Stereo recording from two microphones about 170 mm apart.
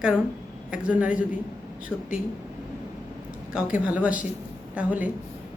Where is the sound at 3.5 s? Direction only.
5° right (ahead or behind).